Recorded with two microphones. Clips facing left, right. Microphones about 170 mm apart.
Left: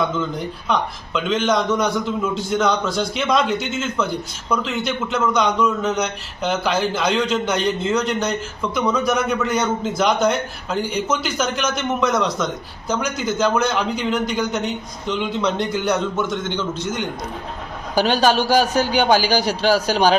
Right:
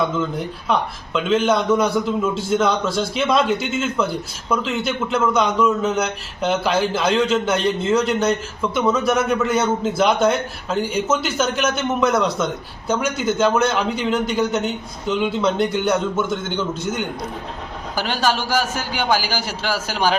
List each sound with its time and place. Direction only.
0.7 s a man's voice: 5° right (ahead or behind)
17.9 s a man's voice: 20° left (ahead or behind)